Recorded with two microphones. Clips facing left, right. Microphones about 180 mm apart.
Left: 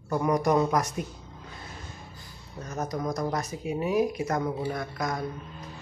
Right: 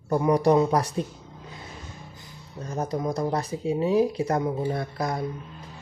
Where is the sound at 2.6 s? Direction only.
30° right (ahead or behind).